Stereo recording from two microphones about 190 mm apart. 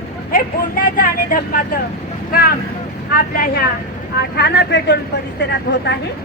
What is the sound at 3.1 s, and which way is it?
Speech, 50° left (ahead or behind).